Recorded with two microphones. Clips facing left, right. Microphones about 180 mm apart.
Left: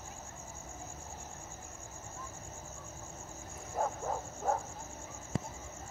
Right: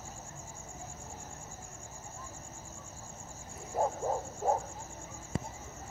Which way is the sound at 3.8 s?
25° right (ahead or behind).